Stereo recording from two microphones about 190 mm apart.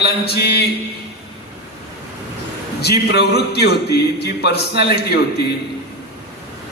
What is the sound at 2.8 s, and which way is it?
Speech, 60° left (ahead or behind).